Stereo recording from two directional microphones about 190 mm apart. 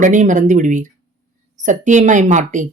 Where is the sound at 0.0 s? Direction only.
40° right (ahead or behind).